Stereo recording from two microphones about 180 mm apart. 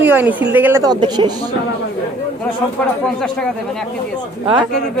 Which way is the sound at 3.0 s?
Centre (ahead or behind).